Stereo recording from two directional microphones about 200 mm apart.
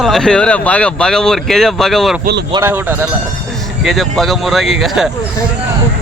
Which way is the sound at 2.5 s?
15° right (ahead or behind).